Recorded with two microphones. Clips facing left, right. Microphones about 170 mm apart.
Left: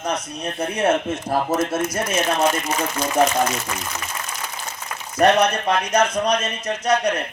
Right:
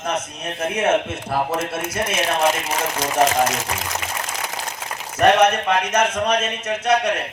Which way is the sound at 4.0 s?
90° right.